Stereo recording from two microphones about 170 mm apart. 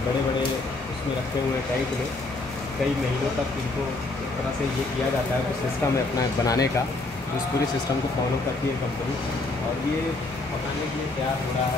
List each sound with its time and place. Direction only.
6.1 s speech: 20° left (ahead or behind)